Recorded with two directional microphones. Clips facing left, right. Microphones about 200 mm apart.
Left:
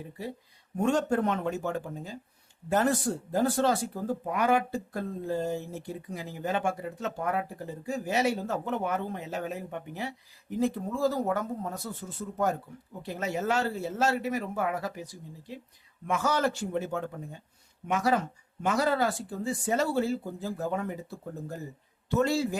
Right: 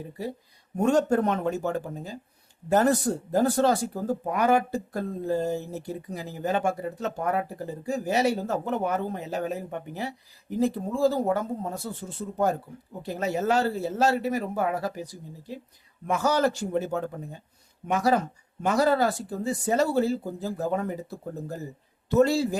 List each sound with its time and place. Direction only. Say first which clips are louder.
0.8 s speech: right 4 dB; 40° right (ahead or behind)